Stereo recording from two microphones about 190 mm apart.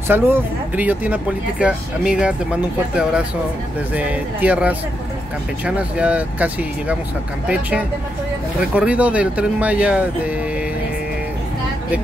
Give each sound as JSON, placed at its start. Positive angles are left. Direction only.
{"t": 0.1, "sound": "speech", "side_deg": -10}
{"t": 8.5, "sound": "speech", "side_deg": -5}